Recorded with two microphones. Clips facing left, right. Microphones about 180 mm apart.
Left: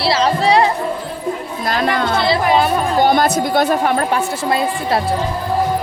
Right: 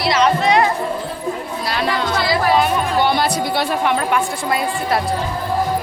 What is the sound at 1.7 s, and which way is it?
Speech, 50° left (ahead or behind).